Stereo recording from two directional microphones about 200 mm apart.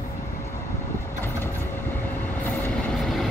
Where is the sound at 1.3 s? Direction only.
10° left (ahead or behind).